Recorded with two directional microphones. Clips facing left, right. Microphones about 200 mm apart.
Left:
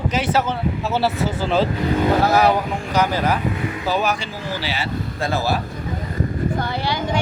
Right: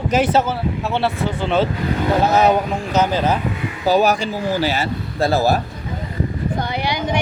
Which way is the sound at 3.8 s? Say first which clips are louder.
Right 8 dB; 40° right (ahead or behind).